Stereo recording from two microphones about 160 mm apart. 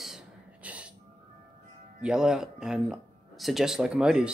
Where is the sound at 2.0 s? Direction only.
5° right (ahead or behind).